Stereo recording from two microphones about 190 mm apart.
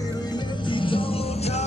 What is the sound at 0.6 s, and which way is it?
Music, 25° left (ahead or behind).